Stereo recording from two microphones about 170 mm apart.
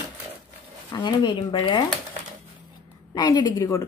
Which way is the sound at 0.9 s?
25° left (ahead or behind).